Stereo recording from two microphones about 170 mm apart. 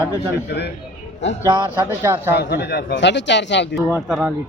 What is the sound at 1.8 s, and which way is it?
Speech, 10° right (ahead or behind).